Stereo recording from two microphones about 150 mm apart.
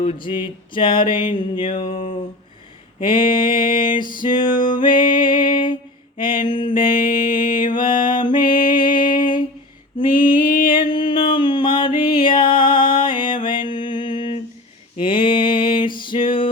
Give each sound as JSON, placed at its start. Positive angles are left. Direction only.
{"t": 0.0, "sound": "a sound", "side_deg": 35}
{"t": 3.4, "sound": "music", "side_deg": 70}
{"t": 3.8, "sound": "a sound", "side_deg": 30}
{"t": 5.3, "sound": "music", "side_deg": 35}
{"t": 6.1, "sound": "a sound", "side_deg": 35}
{"t": 7.7, "sound": "mantra", "side_deg": 30}
{"t": 8.1, "sound": "music", "side_deg": 30}
{"t": 10.0, "sound": "female singing", "side_deg": 30}
{"t": 10.5, "sound": "music", "side_deg": 70}
{"t": 10.8, "sound": "music", "side_deg": 30}